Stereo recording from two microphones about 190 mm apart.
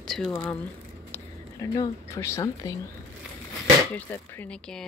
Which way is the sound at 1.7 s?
20° left (ahead or behind).